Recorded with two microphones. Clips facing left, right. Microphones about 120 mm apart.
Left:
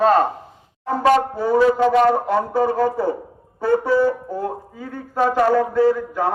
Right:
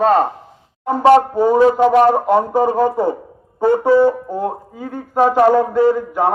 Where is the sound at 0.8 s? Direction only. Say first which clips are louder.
Right 5 dB; 25° right (ahead or behind).